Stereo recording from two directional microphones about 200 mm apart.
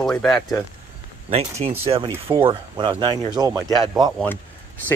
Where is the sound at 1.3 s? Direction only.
30° right (ahead or behind).